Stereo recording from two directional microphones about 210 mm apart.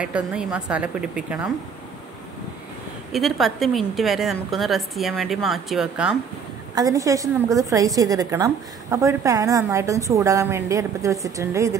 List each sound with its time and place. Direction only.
0.0 s a woman's voice: 5° right (ahead or behind)
3.1 s a woman's voice: centre (ahead or behind)
6.7 s a woman's voice: 15° right (ahead or behind)